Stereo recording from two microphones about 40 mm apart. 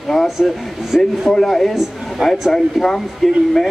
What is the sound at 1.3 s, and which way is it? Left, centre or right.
A man's voice, centre.